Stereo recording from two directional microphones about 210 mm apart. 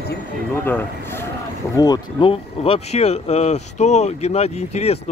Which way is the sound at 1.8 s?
20° left (ahead or behind).